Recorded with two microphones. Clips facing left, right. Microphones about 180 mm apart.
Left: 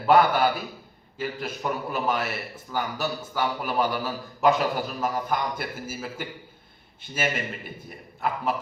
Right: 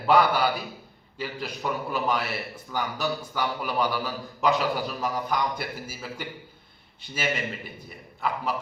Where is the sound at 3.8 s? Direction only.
45° left (ahead or behind).